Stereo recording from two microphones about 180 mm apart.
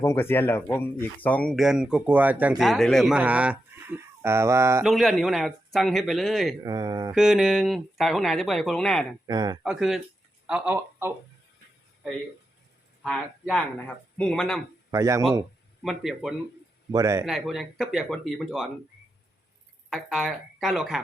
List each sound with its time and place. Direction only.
0.0 s speech: 15° left (ahead or behind); by 4.8 s 15° right (ahead or behind)
4.8 s speech: centre (ahead or behind)
6.6 s speech: 20° right (ahead or behind)
7.1 s speech: centre (ahead or behind)
9.2 s speech: 20° right (ahead or behind)
9.6 s speech: 5° right (ahead or behind)
13.0 s speech: 5° left (ahead or behind)
14.8 s speech: 15° right (ahead or behind)
15.8 s speech: centre (ahead or behind)
16.9 s speech: 20° right (ahead or behind)
17.2 s speech: centre (ahead or behind)
19.9 s speech: centre (ahead or behind)